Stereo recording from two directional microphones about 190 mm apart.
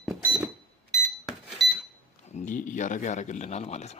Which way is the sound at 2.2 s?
40° left (ahead or behind).